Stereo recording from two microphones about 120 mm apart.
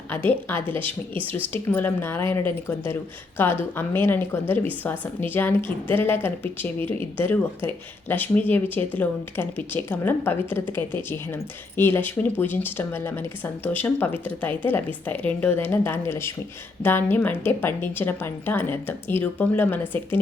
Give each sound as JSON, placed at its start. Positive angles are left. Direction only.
{"t": 0.3, "sound": "speech", "side_deg": 15}